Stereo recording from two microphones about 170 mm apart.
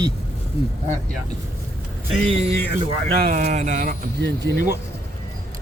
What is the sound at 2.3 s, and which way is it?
Speech, 35° right (ahead or behind).